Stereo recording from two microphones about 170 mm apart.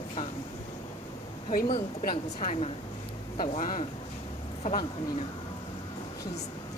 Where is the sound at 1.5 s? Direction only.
55° left (ahead or behind).